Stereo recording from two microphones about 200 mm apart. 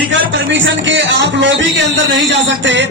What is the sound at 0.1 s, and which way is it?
Music, 70° right (ahead or behind).